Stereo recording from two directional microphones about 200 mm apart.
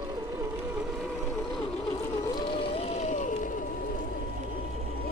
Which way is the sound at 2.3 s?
25° left (ahead or behind).